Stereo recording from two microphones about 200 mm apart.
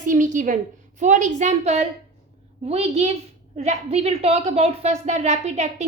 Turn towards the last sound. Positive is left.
turn(degrees=-35)  # may be behind; listen again after turning